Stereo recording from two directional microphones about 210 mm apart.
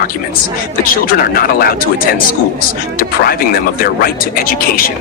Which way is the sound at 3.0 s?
45° left (ahead or behind).